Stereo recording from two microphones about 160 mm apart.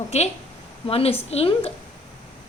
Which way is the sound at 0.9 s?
35° left (ahead or behind).